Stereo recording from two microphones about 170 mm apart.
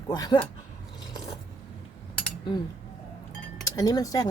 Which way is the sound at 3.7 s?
20° left (ahead or behind).